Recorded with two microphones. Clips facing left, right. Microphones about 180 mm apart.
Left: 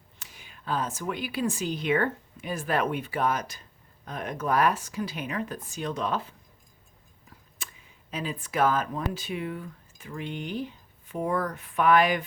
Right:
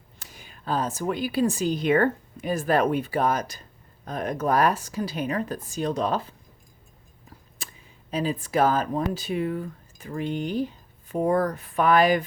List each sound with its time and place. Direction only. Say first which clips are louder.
0.2 s speech: right 4 dB; 40° right (ahead or behind)
7.6 s a sound: right 2 dB; 35° right (ahead or behind)
8.1 s speech: right 6 dB; 35° right (ahead or behind)